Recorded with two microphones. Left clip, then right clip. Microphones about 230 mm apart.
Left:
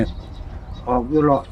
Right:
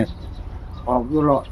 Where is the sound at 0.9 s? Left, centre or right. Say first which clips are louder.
Even; centre.